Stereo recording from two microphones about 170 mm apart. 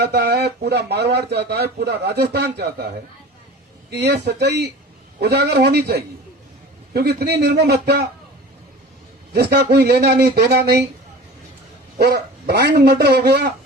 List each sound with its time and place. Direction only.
0.0 s speech: 65° right (ahead or behind)
3.8 s speech: 90° right; by 8.0 s 70° right (ahead or behind)
9.3 s speech: 75° right (ahead or behind)
11.9 s speech: 65° right (ahead or behind)